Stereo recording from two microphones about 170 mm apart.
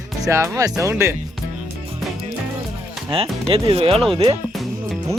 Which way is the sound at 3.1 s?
35° right (ahead or behind).